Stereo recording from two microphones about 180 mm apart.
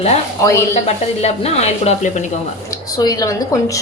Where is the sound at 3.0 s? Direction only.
20° left (ahead or behind).